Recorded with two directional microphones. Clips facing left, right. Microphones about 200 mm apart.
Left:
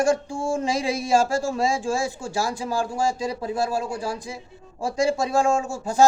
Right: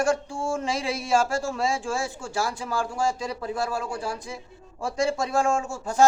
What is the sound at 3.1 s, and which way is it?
A man's voice, 10° left (ahead or behind).